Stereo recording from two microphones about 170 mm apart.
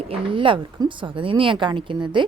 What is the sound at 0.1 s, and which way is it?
A woman's voice, 30° right (ahead or behind).